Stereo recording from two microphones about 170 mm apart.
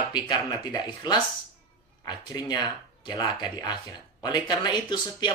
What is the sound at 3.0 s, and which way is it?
Speech, 25° left (ahead or behind).